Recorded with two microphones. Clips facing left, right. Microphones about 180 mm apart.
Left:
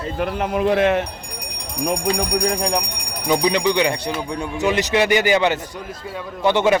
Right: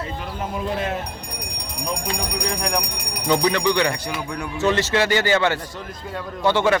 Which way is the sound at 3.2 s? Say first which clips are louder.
Left 1 dB; 15° left (ahead or behind).